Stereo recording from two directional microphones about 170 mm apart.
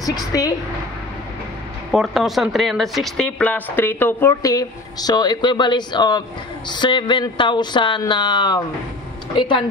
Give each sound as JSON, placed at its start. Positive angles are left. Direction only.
{"t": 0.0, "sound": "speech", "side_deg": 20}
{"t": 1.9, "sound": "speech", "side_deg": 0}